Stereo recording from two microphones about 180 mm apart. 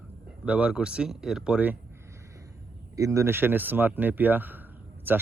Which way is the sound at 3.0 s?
15° right (ahead or behind).